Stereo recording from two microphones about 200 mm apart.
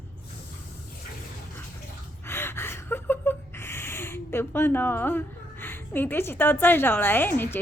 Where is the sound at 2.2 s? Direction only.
10° left (ahead or behind).